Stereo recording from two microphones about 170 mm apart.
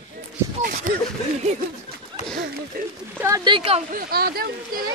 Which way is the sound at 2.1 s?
30° right (ahead or behind).